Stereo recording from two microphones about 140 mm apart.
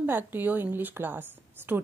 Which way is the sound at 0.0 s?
15° right (ahead or behind).